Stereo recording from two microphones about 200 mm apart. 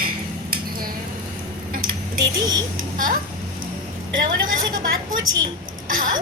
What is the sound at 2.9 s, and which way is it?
Speech, 45° right (ahead or behind).